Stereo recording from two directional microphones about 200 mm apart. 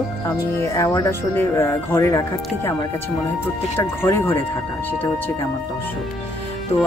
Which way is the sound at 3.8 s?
10° left (ahead or behind).